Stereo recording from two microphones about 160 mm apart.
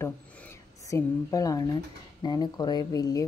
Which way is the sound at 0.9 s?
20° left (ahead or behind).